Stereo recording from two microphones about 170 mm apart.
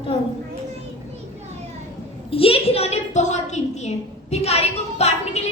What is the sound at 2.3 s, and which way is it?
A woman's voice, 35° left (ahead or behind).